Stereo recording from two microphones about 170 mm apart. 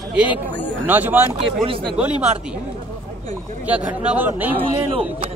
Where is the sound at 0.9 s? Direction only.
10° right (ahead or behind).